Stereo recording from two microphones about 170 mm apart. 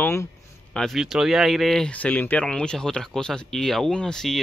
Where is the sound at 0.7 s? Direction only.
Centre (ahead or behind).